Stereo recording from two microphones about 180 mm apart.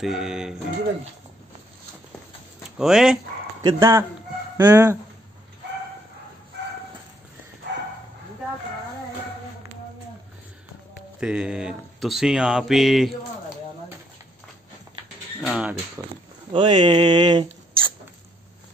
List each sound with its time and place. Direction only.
0.0 s speech: 5° right (ahead or behind)
2.8 s speech: centre (ahead or behind)
3.6 s speech: 15° right (ahead or behind)
11.1 s speech: 5° right (ahead or behind)
15.4 s speech: 5° right (ahead or behind)
16.0 s speech: 15° right (ahead or behind)
16.5 s speech: 30° right (ahead or behind)